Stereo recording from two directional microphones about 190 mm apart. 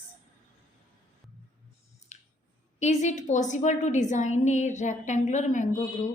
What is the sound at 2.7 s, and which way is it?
A woman's voice, 35° left (ahead or behind).